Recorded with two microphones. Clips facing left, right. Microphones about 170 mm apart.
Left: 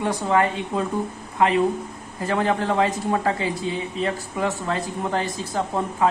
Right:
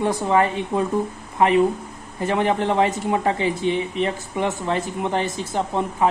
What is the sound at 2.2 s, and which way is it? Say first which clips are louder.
Speech: right 2 dB; 25° right (ahead or behind).